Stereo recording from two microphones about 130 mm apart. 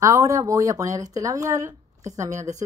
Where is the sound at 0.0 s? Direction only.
25° right (ahead or behind).